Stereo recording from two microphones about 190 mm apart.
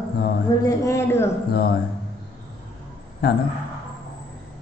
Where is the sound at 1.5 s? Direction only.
55° left (ahead or behind).